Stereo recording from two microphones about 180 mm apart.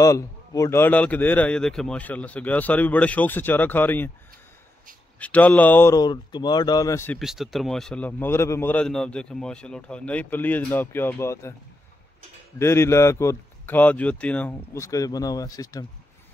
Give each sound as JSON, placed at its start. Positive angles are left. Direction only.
{"t": 0.0, "sound": "a man's voice", "side_deg": 20}
{"t": 5.2, "sound": "a man's voice", "side_deg": 10}
{"t": 7.2, "sound": "a man's voice", "side_deg": 0}
{"t": 12.5, "sound": "a man's voice", "side_deg": 15}